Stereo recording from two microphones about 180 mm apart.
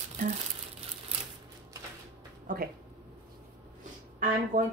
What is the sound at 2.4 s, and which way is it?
Speech, 55° right (ahead or behind).